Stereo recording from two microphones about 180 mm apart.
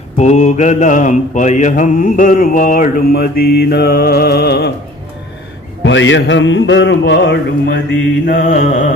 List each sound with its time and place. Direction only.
0.2 s mantra: 40° left (ahead or behind); by 4.7 s 65° left (ahead or behind)
5.8 s music: 90° left; by 7.8 s 75° left (ahead or behind)
8.3 s mantra: 50° left (ahead or behind)